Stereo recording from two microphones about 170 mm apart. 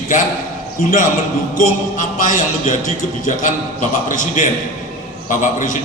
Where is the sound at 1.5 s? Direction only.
50° left (ahead or behind).